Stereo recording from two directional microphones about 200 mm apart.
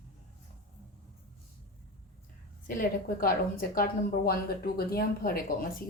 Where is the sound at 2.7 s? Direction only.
45° left (ahead or behind).